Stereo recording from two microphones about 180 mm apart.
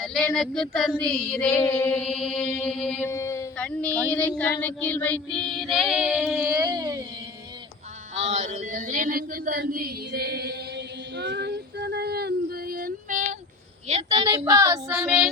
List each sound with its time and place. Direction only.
0.0 s child singing: 5° left (ahead or behind)
3.1 s a sound: 15° left (ahead or behind)
3.7 s child singing: 5° left (ahead or behind); by 7.0 s 20° right (ahead or behind)
8.1 s a sound: 35° right (ahead or behind)
13.8 s a woman's voice: 30° right (ahead or behind)
14.3 s speech: 20° right (ahead or behind)
14.9 s child singing: 5° right (ahead or behind)